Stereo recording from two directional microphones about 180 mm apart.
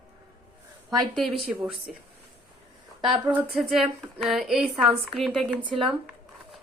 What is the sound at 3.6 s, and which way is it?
A woman's voice, centre (ahead or behind).